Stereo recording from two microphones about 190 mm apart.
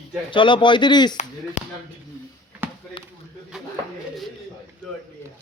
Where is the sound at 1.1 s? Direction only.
40° left (ahead or behind).